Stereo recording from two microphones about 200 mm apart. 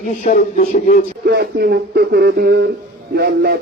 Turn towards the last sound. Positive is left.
turn(degrees=-55)  # may be behind; listen again after turning